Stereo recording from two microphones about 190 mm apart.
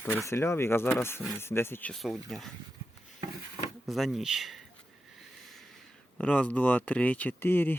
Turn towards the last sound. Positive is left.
turn(degrees=10)  # may be behind; listen again after turning